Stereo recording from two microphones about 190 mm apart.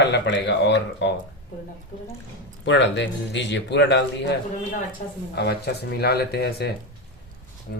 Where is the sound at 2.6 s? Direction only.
70° left (ahead or behind).